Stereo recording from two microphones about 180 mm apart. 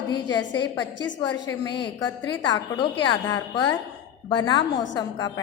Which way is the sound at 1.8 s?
20° left (ahead or behind).